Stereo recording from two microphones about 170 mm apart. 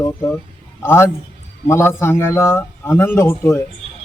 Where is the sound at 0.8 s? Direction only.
15° left (ahead or behind).